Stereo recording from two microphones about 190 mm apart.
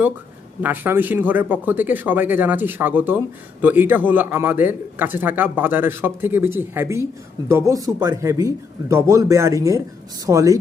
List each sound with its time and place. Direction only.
0.6 s a man's voice: 10° right (ahead or behind)